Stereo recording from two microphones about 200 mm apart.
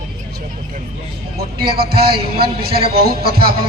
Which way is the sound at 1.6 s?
50° right (ahead or behind).